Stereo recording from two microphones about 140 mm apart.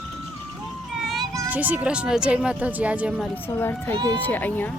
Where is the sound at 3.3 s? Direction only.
15° left (ahead or behind).